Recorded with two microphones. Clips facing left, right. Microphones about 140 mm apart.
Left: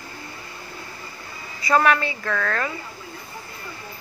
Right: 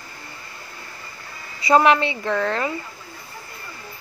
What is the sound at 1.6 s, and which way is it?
A woman's voice, 25° right (ahead or behind).